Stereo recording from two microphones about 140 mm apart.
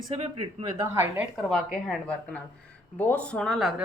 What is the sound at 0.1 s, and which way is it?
Speech, 45° right (ahead or behind).